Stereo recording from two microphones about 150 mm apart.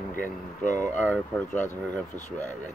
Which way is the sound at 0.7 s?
20° right (ahead or behind).